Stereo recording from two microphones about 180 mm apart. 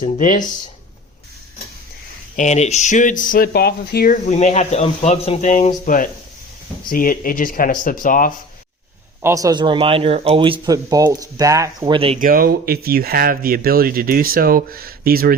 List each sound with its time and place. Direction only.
0.0 s speech: 45° left (ahead or behind)
2.3 s speech: 40° left (ahead or behind); by 4.2 s 55° left (ahead or behind)
4.3 s speech: 40° left (ahead or behind)
9.2 s speech: 20° right (ahead or behind)
11.9 s speech: 30° right (ahead or behind)
12.2 s speech: 55° right (ahead or behind)